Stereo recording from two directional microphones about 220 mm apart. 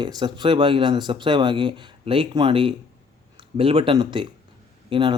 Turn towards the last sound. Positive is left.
turn(degrees=-25)  # may be behind; listen again after turning